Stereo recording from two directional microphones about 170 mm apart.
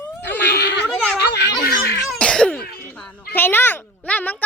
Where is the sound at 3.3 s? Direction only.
10° left (ahead or behind).